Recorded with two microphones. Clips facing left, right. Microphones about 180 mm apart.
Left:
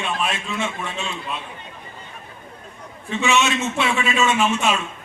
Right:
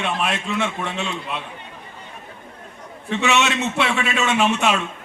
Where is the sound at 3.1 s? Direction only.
70° right (ahead or behind).